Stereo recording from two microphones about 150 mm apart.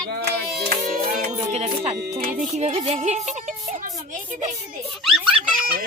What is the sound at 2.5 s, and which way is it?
Speech, 45° right (ahead or behind).